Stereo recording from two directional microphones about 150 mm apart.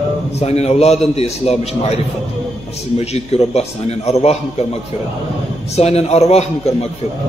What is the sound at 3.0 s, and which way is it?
A man's voice, 45° left (ahead or behind).